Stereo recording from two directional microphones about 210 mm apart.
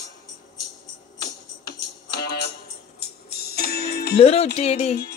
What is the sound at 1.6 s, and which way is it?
Music, 50° left (ahead or behind).